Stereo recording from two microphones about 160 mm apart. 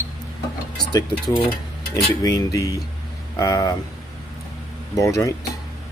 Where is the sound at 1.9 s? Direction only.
20° left (ahead or behind).